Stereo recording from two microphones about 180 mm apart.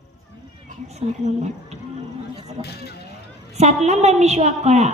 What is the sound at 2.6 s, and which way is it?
Speech, 65° left (ahead or behind).